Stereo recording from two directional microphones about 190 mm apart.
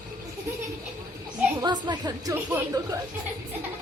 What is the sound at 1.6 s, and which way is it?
Speech, 20° right (ahead or behind).